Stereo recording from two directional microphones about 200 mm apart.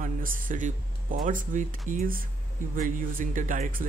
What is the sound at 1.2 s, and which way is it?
Speech, 40° right (ahead or behind).